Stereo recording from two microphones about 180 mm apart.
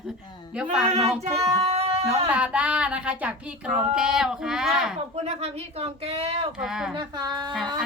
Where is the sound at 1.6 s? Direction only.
35° right (ahead or behind).